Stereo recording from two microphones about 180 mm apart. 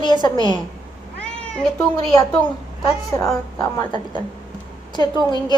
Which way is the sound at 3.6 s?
25° left (ahead or behind).